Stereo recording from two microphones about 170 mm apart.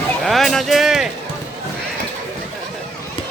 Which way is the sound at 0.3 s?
Centre (ahead or behind).